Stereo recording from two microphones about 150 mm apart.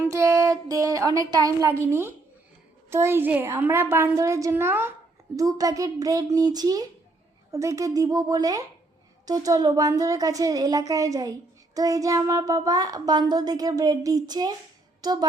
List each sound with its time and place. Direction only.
0.0 s a woman's voice: 20° right (ahead or behind)